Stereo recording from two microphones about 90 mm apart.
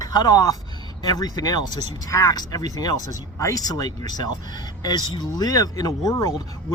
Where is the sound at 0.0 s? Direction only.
45° left (ahead or behind).